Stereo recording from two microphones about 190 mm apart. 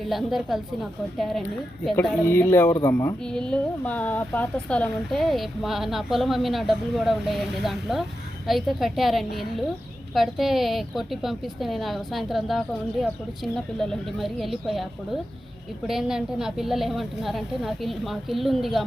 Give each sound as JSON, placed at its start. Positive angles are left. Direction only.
{"t": 0.1, "sound": "speech", "side_deg": 0}
{"t": 2.2, "sound": "speech", "side_deg": 10}
{"t": 15.9, "sound": "speech", "side_deg": -5}